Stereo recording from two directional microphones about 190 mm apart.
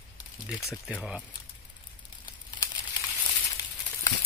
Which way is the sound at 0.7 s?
Centre (ahead or behind).